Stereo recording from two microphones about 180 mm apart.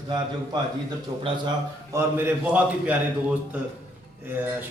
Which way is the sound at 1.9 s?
15° right (ahead or behind).